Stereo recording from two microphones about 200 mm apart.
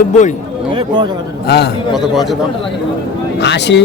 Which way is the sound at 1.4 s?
55° left (ahead or behind).